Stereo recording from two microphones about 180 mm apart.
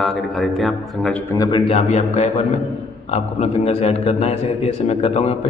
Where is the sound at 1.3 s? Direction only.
25° left (ahead or behind).